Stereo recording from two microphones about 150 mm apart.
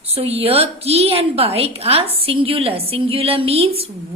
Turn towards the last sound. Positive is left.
turn(degrees=-40)  # may be behind; listen again after turning